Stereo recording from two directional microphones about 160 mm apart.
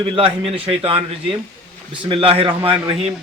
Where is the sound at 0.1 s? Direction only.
35° right (ahead or behind).